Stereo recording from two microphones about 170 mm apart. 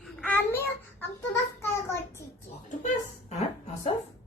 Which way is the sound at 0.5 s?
15° left (ahead or behind).